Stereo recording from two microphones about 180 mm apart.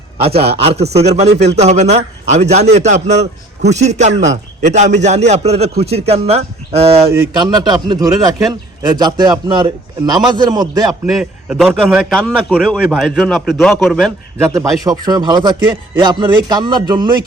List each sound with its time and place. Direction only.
0.2 s a man's voice: 35° right (ahead or behind)
7.4 s speech: 25° right (ahead or behind)
11.1 s a man's voice: centre (ahead or behind)
14.4 s speech: 20° right (ahead or behind)